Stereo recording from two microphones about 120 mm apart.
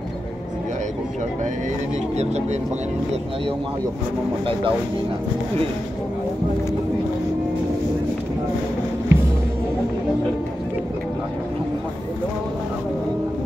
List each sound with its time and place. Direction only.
9.1 s music: 25° right (ahead or behind)